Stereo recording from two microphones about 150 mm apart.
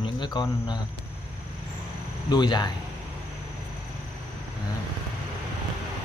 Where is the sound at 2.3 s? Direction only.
30° left (ahead or behind).